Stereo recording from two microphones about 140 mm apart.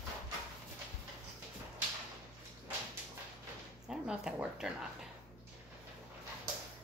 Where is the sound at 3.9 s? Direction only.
5° right (ahead or behind).